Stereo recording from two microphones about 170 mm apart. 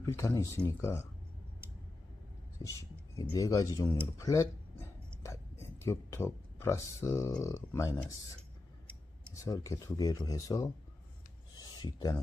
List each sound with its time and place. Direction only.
0.0 s speech: 20° left (ahead or behind)
2.6 s speech: 20° left (ahead or behind)
5.9 s speech: 15° left (ahead or behind)
9.3 s speech: 20° left (ahead or behind)
11.6 s a sound: 25° left (ahead or behind)